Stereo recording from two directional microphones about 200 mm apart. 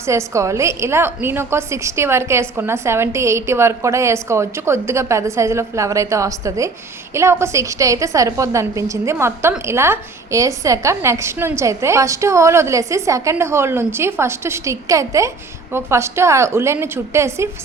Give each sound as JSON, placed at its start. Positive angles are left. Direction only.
{"t": 0.0, "sound": "a woman's voice", "side_deg": -15}